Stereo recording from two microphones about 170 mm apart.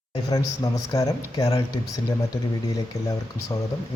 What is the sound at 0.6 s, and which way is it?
Speech, 20° left (ahead or behind).